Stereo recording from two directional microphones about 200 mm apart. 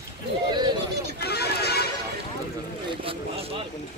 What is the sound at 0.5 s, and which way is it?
Bird, 20° right (ahead or behind).